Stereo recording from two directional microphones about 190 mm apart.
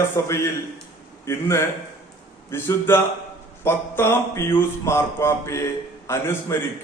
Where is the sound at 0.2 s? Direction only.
15° left (ahead or behind).